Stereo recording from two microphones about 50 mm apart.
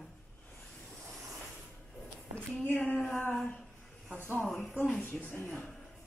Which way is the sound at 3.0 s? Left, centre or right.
Left.